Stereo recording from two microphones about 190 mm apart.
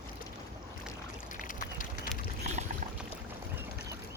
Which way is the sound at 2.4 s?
35° right (ahead or behind).